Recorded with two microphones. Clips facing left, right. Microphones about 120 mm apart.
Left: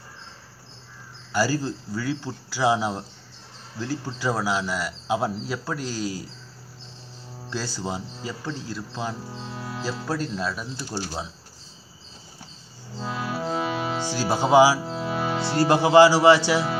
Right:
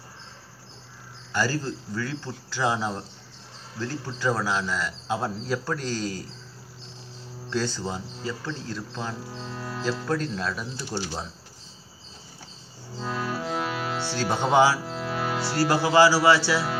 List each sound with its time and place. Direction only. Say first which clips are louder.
1.3 s speech: left 3 dB; 10° left (ahead or behind)
7.4 s speech: right 2 dB; 5° left (ahead or behind)
13.0 s music: even; 15° left (ahead or behind)
13.4 s music: left 2 dB; 25° left (ahead or behind)
13.9 s speech: left 2 dB; 15° left (ahead or behind)
14.9 s music: left 3 dB; 20° left (ahead or behind)
15.3 s speech: left 3 dB; 20° left (ahead or behind)